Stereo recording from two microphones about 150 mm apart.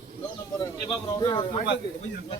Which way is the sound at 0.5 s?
25° left (ahead or behind).